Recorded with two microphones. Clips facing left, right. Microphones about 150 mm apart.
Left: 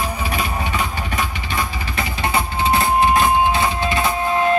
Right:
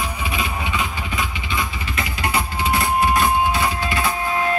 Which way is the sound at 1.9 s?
25° left (ahead or behind).